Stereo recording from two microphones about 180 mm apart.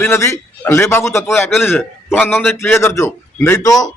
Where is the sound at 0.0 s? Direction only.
15° left (ahead or behind).